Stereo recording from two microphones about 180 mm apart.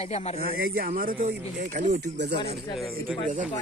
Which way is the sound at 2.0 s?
65° right (ahead or behind).